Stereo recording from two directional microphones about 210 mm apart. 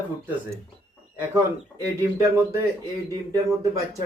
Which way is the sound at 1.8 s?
15° right (ahead or behind).